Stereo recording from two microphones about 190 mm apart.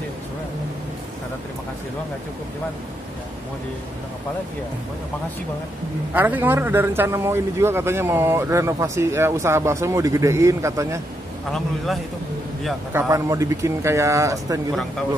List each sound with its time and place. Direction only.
6.1 s a man's voice: 10° right (ahead or behind)
11.5 s a man's voice: centre (ahead or behind)
13.1 s a man's voice: 15° right (ahead or behind)